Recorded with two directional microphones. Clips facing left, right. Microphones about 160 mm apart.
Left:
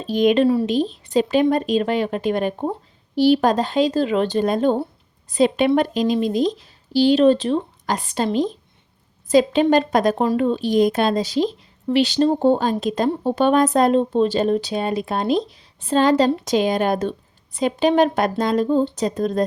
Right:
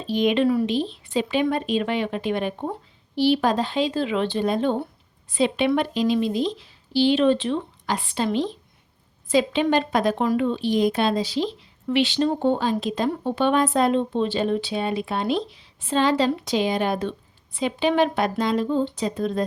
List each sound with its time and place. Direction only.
0.1 s speech: 45° left (ahead or behind)